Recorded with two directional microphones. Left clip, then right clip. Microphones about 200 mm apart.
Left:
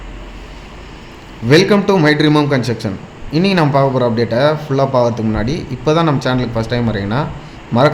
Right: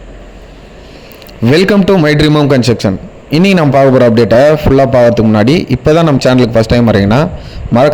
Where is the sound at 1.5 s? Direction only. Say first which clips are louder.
Right 3 dB; 45° right (ahead or behind).